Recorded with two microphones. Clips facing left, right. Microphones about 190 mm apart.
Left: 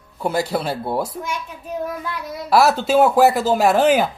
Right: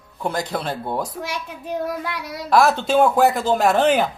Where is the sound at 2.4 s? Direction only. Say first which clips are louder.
Left 1 dB; 5° left (ahead or behind).